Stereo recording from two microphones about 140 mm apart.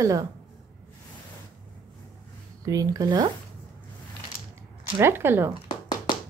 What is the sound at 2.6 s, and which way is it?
Speech, 25° right (ahead or behind).